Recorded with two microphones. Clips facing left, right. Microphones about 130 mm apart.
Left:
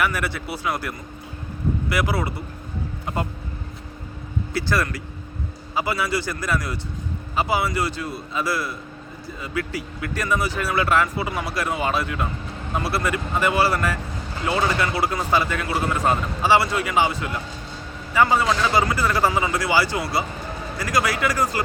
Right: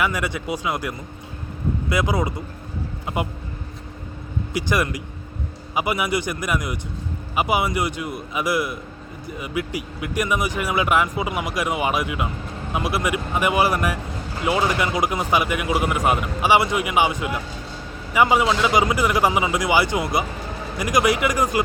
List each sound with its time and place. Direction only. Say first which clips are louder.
0.0 s speech: right 1 dB; 15° right (ahead or behind)
4.5 s speech: right 1 dB; 15° right (ahead or behind)